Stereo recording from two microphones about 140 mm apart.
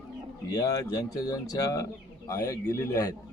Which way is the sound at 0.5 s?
25° left (ahead or behind).